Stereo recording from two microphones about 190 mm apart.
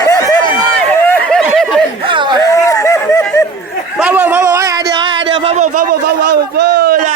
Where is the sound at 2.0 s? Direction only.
25° right (ahead or behind).